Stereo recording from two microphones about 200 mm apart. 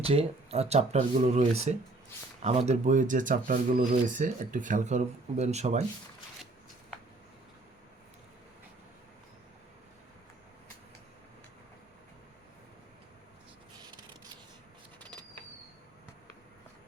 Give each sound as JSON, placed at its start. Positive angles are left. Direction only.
{"t": 0.1, "sound": "speech", "side_deg": -30}